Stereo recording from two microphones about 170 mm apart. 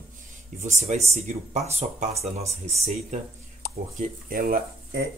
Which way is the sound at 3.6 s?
60° left (ahead or behind).